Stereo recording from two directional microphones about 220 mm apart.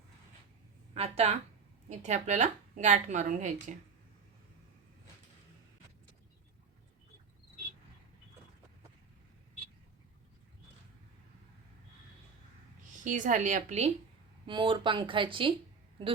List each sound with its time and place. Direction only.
0.9 s a woman's voice: 30° right (ahead or behind)
12.9 s a woman's voice: 35° right (ahead or behind)